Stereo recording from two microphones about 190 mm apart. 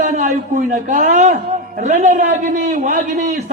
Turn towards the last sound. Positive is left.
turn(degrees=-40)  # may be behind; listen again after turning